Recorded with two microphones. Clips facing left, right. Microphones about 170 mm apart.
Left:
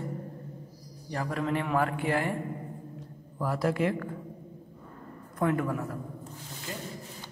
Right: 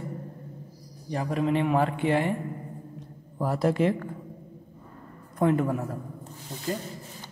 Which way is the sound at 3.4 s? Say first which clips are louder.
Right 4 dB; 25° right (ahead or behind).